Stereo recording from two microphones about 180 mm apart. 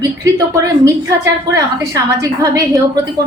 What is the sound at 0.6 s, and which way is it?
A woman's voice, 20° right (ahead or behind).